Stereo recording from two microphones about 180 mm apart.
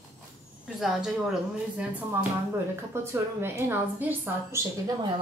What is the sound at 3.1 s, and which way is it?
A woman's voice, 15° right (ahead or behind).